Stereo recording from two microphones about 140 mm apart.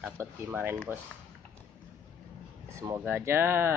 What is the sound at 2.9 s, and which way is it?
Speech, 15° right (ahead or behind).